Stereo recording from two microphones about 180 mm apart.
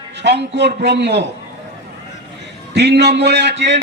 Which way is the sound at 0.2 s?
75° right (ahead or behind).